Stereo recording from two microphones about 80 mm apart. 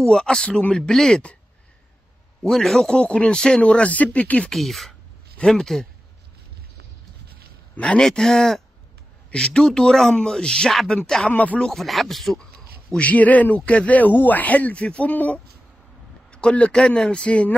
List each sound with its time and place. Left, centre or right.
0.0 s a man's voice: centre
2.4 s a man's voice: centre
4.5 s speech: centre
7.7 s a man's voice: centre
11.2 s a man's voice: centre
11.7 s a man's voice: centre